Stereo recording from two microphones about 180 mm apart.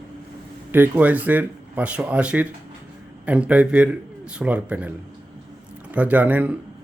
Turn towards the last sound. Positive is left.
turn(degrees=-10)  # may be behind; listen again after turning